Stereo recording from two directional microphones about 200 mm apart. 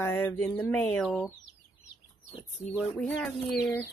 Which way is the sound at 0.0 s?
10° left (ahead or behind).